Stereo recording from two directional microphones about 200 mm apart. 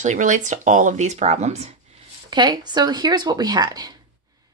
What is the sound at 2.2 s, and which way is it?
Speech, 20° right (ahead or behind).